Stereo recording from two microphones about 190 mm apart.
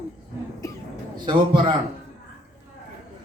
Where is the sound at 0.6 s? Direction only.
15° left (ahead or behind).